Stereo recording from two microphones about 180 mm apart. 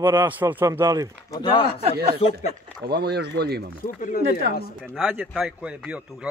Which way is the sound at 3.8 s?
50° left (ahead or behind).